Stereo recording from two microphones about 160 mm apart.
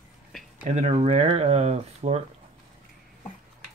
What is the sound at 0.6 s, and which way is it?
Speech, 45° right (ahead or behind).